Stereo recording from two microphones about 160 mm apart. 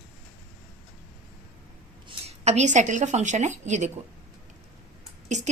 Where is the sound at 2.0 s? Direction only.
40° right (ahead or behind).